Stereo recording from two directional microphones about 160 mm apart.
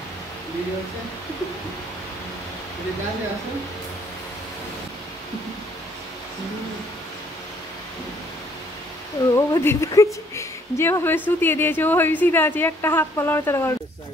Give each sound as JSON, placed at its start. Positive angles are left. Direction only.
{"t": 9.3, "sound": "a woman's voice", "side_deg": 15}